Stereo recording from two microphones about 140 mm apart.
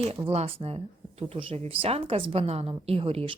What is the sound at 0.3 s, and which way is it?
Speech, 40° right (ahead or behind).